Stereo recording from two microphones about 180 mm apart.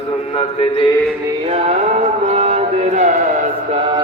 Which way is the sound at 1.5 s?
35° right (ahead or behind).